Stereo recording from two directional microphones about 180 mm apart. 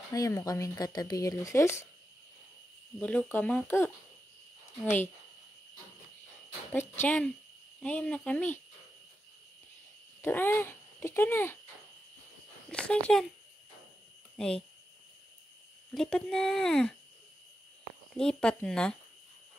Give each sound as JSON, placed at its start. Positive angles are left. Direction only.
{"t": 0.1, "sound": "speech", "side_deg": 20}
{"t": 3.0, "sound": "speech", "side_deg": 10}
{"t": 6.7, "sound": "speech", "side_deg": 10}
{"t": 10.2, "sound": "a child's voice", "side_deg": 10}
{"t": 12.6, "sound": "speech", "side_deg": 5}
{"t": 14.3, "sound": "a sound", "side_deg": 5}
{"t": 15.9, "sound": "speech", "side_deg": 5}
{"t": 18.1, "sound": "speech", "side_deg": 5}